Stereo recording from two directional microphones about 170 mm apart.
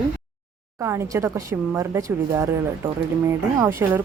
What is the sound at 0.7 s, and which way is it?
A woman's voice, 15° right (ahead or behind).